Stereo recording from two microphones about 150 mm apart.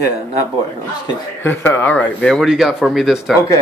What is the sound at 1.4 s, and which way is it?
Speech, 10° left (ahead or behind).